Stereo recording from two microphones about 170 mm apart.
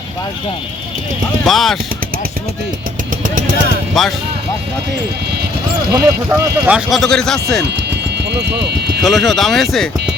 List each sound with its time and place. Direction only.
1.5 s speech: centre (ahead or behind)
4.0 s speech: centre (ahead or behind)
5.9 s speech: 15° right (ahead or behind)
6.7 s speech: centre (ahead or behind)
9.0 s speech: centre (ahead or behind)